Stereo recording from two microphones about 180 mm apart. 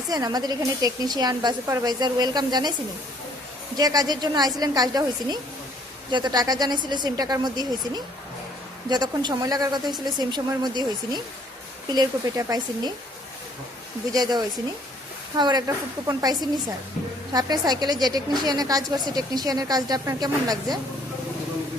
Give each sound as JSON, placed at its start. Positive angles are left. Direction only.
{"t": 0.1, "sound": "a woman's voice", "side_deg": -20}
{"t": 3.8, "sound": "a woman's voice", "side_deg": -20}
{"t": 14.1, "sound": "a woman's voice", "side_deg": -20}